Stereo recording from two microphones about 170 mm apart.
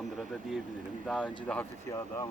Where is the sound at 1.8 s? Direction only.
20° left (ahead or behind).